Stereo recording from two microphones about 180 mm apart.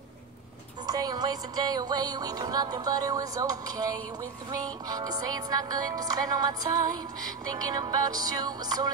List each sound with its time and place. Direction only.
0.8 s music: 20° right (ahead or behind)